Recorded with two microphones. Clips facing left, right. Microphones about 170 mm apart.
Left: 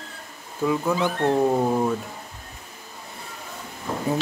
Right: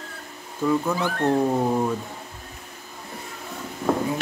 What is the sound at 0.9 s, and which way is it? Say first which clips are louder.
Speech: left 2 dB; 15° left (ahead or behind).